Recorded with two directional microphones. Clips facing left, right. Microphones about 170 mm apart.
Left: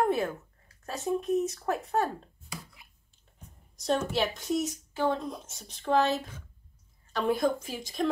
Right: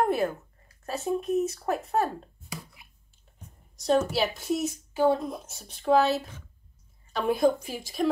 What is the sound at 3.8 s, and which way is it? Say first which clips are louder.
Speech: right 4 dB; 5° right (ahead or behind).